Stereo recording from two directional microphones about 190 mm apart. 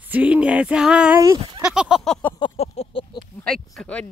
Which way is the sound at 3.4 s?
5° left (ahead or behind).